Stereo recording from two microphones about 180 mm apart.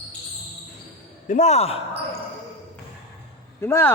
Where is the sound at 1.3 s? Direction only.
40° left (ahead or behind).